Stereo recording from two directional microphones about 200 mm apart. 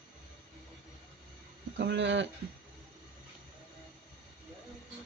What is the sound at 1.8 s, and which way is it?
Speech, 60° right (ahead or behind).